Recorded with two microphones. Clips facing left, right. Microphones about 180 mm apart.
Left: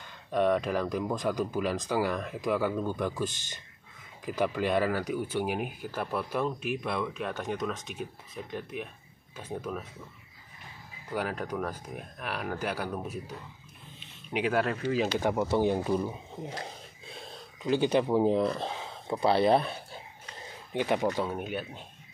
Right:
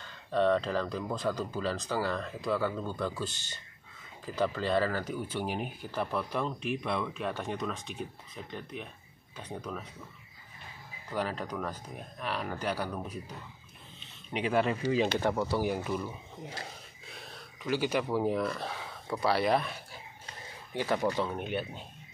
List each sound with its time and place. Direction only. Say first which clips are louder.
0.0 s speech: left 1 dB; 15° left (ahead or behind)
11.1 s speech: left 2 dB; 5° left (ahead or behind)
13.9 s a sound: left 3 dB; 5° left (ahead or behind)
15.1 s speech: left 3 dB; 15° left (ahead or behind)
20.7 s speech: left 2 dB; 20° left (ahead or behind); by 21.8 s centre (ahead or behind)